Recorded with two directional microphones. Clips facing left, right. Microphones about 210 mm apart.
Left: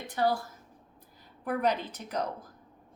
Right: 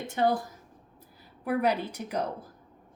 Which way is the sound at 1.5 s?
10° right (ahead or behind).